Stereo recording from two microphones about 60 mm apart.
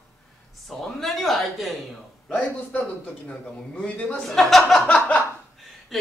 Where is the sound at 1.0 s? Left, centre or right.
Centre.